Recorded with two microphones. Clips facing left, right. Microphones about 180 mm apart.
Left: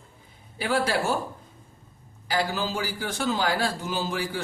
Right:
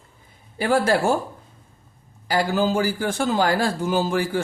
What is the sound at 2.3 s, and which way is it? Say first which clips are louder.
A man's voice: right 6 dB; 45° right (ahead or behind).